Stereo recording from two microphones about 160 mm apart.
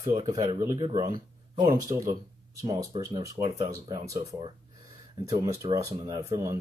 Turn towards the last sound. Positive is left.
turn(degrees=-20)  # may be behind; listen again after turning